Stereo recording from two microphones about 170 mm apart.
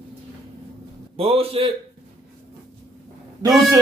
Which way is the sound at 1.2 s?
35° right (ahead or behind).